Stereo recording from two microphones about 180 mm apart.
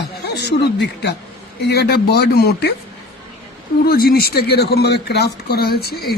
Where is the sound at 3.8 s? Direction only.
60° left (ahead or behind).